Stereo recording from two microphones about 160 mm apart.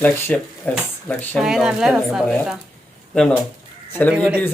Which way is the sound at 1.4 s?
Centre (ahead or behind).